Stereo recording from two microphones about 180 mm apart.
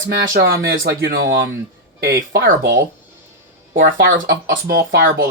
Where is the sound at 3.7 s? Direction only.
70° right (ahead or behind).